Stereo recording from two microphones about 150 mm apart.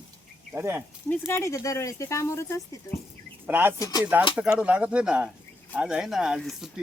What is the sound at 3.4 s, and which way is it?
Speech, 15° right (ahead or behind).